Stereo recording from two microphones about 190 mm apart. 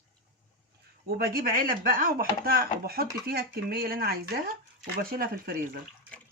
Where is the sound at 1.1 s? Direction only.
50° right (ahead or behind).